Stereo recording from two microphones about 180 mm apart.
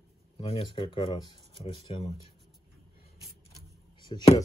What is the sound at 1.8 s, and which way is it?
Speech, 35° left (ahead or behind).